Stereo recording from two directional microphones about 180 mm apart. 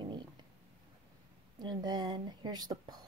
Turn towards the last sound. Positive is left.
turn(degrees=-20)  # may be behind; listen again after turning